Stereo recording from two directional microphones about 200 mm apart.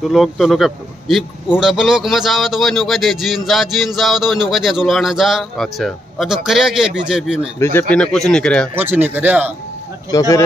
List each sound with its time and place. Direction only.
0.0 s speech: centre (ahead or behind)
7.5 s speech: 15° left (ahead or behind)
7.9 s speech: 5° left (ahead or behind)
8.7 s speech: 10° right (ahead or behind)
10.1 s speech: 15° left (ahead or behind)